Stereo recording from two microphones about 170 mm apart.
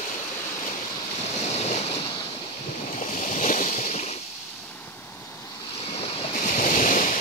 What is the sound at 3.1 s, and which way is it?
Waves, 50° left (ahead or behind).